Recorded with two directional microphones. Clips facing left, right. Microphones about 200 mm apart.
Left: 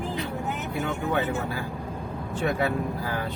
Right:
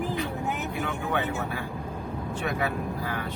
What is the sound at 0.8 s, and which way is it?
Speech, 35° left (ahead or behind).